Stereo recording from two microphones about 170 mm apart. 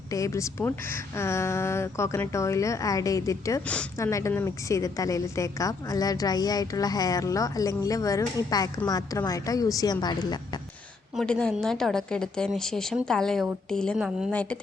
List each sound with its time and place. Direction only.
0.1 s a woman's voice: 20° left (ahead or behind)
11.2 s a woman's voice: 5° left (ahead or behind)